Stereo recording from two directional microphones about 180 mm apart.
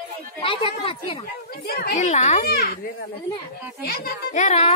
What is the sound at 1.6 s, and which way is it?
Speech, 55° left (ahead or behind).